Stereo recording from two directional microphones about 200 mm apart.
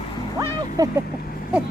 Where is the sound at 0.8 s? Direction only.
15° right (ahead or behind).